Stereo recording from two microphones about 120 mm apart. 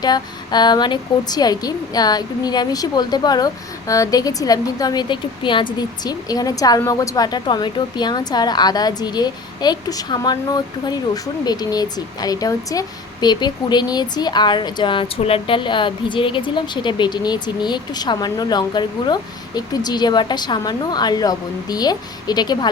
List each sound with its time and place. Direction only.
0.0 s a woman's voice: 35° left (ahead or behind)
6.1 s a woman's voice: 30° left (ahead or behind)